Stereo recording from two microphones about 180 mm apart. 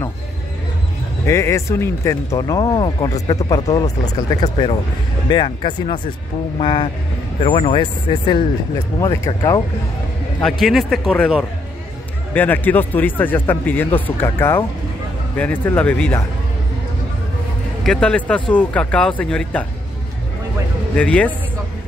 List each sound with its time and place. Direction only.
1.2 s speech: 15° left (ahead or behind)
10.4 s speech: centre (ahead or behind)
17.8 s speech: 5° left (ahead or behind)
20.9 s speech: 5° left (ahead or behind)